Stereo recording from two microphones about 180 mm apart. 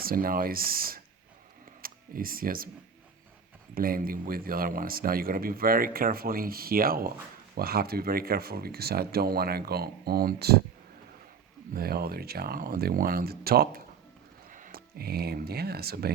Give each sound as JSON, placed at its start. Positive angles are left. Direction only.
{"t": 0.0, "sound": "speech", "side_deg": -55}
{"t": 3.8, "sound": "speech", "side_deg": -55}
{"t": 11.7, "sound": "speech", "side_deg": -55}